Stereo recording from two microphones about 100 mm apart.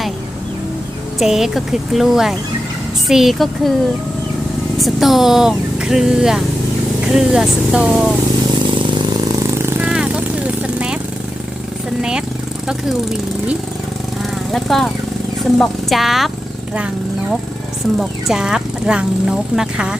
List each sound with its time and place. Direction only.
1.2 s speech: 5° right (ahead or behind)
4.8 s speech: centre (ahead or behind)
9.3 s vehicle: 25° right (ahead or behind)
9.8 s vehicle: 10° right (ahead or behind)
12.6 s speech: 5° right (ahead or behind)